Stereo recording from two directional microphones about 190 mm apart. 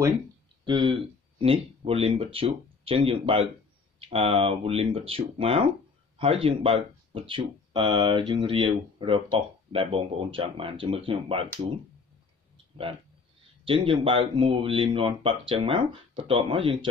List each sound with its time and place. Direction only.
0.7 s speech: 25° right (ahead or behind)
13.7 s speech: 25° right (ahead or behind)